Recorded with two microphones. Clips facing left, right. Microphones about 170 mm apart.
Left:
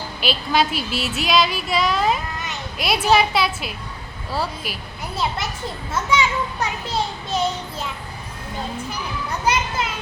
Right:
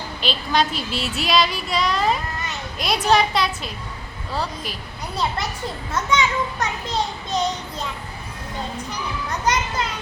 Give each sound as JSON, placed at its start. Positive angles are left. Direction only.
{"t": 0.2, "sound": "a woman's voice", "side_deg": 5}
{"t": 9.5, "sound": "a child's voice", "side_deg": 10}